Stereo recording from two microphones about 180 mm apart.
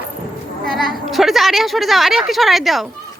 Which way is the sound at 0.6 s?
Centre (ahead or behind).